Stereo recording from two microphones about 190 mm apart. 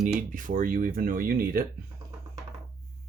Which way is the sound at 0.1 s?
45° right (ahead or behind).